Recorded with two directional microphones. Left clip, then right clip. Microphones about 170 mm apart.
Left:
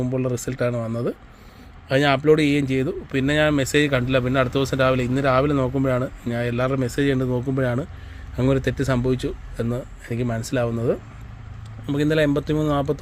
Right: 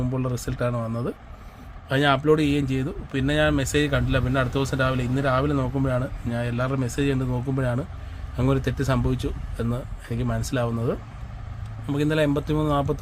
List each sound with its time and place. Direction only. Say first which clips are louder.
0.0 s speech: left 4 dB; 15° left (ahead or behind)